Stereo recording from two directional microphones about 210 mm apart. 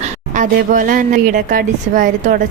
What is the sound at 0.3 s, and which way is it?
A woman's voice, 40° right (ahead or behind).